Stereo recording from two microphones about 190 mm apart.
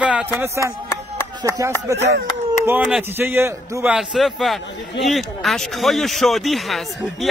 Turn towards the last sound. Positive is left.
turn(degrees=0)  # may be behind; listen again after turning